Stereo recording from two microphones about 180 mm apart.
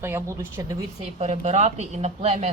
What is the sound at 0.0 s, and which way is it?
Speech, 15° right (ahead or behind).